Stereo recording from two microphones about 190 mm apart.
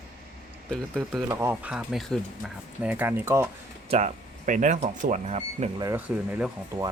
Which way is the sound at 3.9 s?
35° right (ahead or behind).